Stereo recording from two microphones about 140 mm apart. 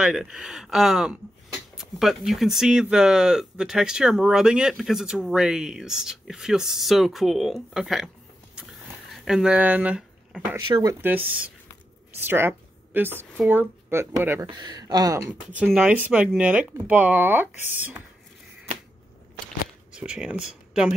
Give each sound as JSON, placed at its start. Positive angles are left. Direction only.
{"t": 0.0, "sound": "speech", "side_deg": -5}
{"t": 9.1, "sound": "speech", "side_deg": 0}
{"t": 10.7, "sound": "speech", "side_deg": -25}
{"t": 11.0, "sound": "speech", "side_deg": -15}
{"t": 14.4, "sound": "speech", "side_deg": -30}
{"t": 16.1, "sound": "speech", "side_deg": -10}
{"t": 19.9, "sound": "speech", "side_deg": -5}